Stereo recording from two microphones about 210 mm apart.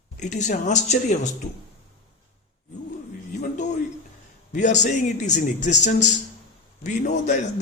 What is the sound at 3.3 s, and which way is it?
A man's voice, 35° left (ahead or behind).